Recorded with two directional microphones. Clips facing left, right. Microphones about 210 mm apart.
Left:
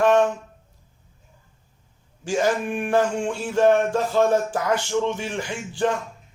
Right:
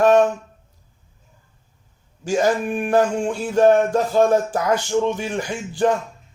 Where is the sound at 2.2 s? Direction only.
40° right (ahead or behind).